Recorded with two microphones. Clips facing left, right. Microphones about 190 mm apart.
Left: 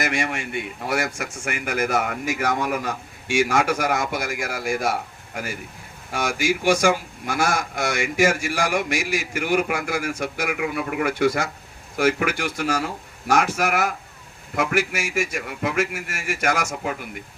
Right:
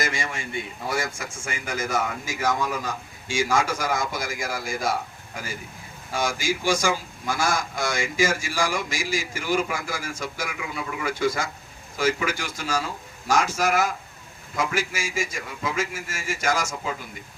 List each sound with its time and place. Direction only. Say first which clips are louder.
0.0 s a man's voice: left 4 dB; 70° left (ahead or behind)
6.1 s a man's voice: left 3 dB; 65° left (ahead or behind)